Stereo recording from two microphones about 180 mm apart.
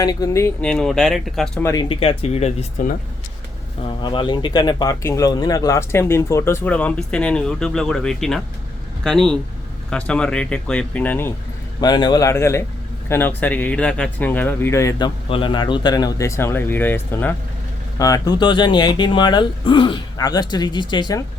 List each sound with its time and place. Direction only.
0.0 s speech: 20° left (ahead or behind)
0.7 s speech: 5° left (ahead or behind)
1.6 s speech: 20° left (ahead or behind); by 2.9 s 40° left (ahead or behind)
3.8 s speech: 25° left (ahead or behind); by 11.3 s 10° left (ahead or behind)
11.8 s speech: 25° left (ahead or behind)